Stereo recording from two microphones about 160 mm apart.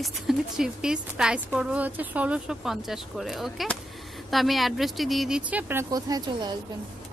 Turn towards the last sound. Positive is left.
turn(degrees=-25)  # may be behind; listen again after turning